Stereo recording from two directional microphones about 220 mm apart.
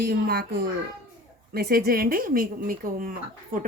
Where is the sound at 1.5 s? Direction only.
45° right (ahead or behind).